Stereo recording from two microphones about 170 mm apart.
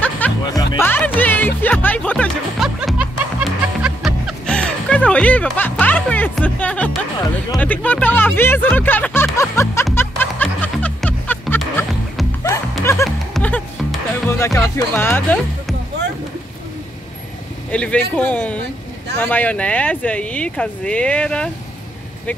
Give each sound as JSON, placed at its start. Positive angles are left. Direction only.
{"t": 0.5, "sound": "music", "side_deg": 20}
{"t": 2.6, "sound": "music", "side_deg": -5}
{"t": 7.5, "sound": "speech", "side_deg": 10}
{"t": 9.9, "sound": "music", "side_deg": 10}
{"t": 13.3, "sound": "music", "side_deg": 5}
{"t": 17.6, "sound": "speech", "side_deg": 5}